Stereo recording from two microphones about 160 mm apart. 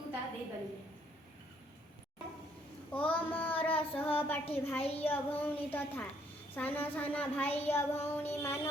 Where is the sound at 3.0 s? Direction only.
35° left (ahead or behind).